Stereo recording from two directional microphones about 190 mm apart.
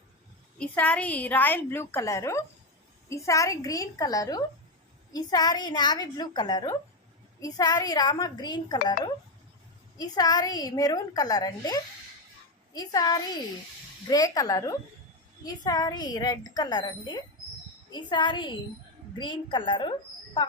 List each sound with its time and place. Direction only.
0.6 s a woman's voice: 5° left (ahead or behind); by 20.5 s 25° left (ahead or behind)